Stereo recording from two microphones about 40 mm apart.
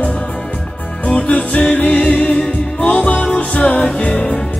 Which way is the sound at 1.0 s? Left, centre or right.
Left.